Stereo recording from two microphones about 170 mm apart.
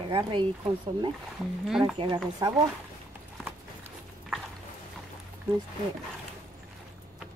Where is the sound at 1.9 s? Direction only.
30° right (ahead or behind).